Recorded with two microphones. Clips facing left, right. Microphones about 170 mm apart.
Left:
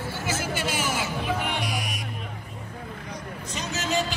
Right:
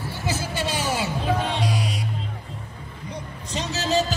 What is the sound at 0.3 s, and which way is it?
Music, 35° right (ahead or behind).